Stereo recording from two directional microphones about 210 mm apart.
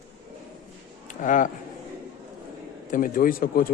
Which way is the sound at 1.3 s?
35° left (ahead or behind).